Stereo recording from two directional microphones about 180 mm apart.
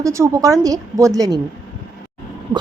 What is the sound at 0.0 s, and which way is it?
A woman's voice, 15° right (ahead or behind).